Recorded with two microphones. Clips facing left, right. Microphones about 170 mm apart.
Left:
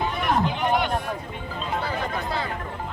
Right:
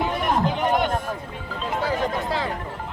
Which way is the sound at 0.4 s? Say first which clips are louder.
Right 2 dB; 45° right (ahead or behind).